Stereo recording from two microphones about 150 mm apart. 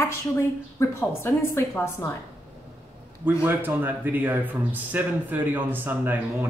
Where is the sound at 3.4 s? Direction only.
15° right (ahead or behind).